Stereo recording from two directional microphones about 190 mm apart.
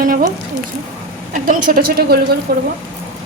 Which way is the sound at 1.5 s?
50° right (ahead or behind).